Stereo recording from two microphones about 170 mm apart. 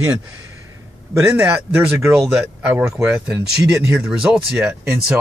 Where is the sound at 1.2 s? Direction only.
15° right (ahead or behind).